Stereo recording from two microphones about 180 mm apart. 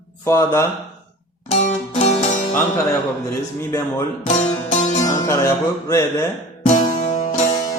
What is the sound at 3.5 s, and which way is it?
Speech, 15° left (ahead or behind).